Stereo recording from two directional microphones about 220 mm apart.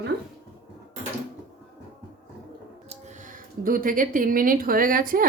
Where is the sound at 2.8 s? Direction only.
35° right (ahead or behind).